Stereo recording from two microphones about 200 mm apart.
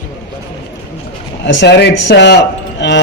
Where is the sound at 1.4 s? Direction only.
60° left (ahead or behind).